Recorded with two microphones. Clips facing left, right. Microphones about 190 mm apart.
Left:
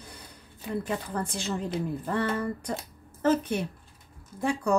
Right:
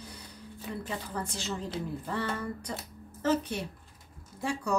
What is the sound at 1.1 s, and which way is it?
Speech, 55° left (ahead or behind).